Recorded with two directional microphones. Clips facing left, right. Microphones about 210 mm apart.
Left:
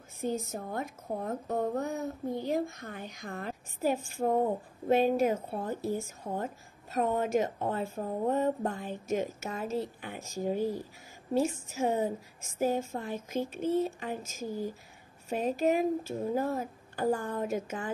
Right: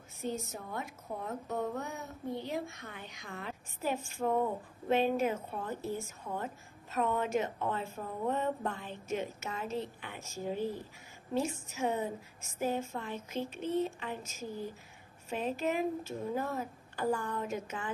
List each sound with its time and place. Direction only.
0.2 s a woman's voice: 45° left (ahead or behind)